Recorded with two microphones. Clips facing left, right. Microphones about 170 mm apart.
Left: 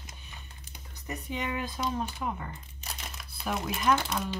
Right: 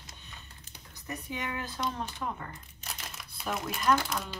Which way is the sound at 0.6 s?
15° left (ahead or behind).